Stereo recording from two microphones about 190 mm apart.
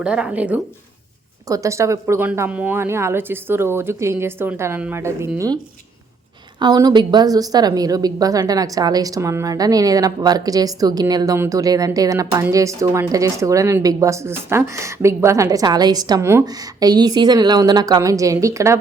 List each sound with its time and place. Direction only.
0.0 s speech: 5° right (ahead or behind)
6.6 s a woman's voice: 20° right (ahead or behind)